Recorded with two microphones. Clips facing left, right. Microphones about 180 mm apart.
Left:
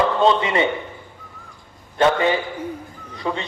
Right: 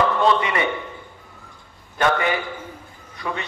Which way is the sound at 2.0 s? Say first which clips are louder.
Left 3 dB; 25° left (ahead or behind).